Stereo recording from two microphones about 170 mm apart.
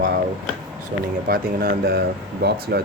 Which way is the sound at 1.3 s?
65° right (ahead or behind).